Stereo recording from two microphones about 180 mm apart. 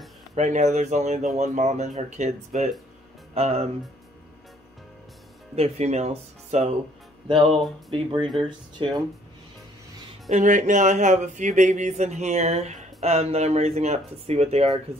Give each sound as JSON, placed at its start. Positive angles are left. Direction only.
{"t": 0.4, "sound": "speech", "side_deg": -40}
{"t": 5.6, "sound": "speech", "side_deg": -35}
{"t": 7.2, "sound": "speech", "side_deg": -25}
{"t": 10.3, "sound": "speech", "side_deg": -45}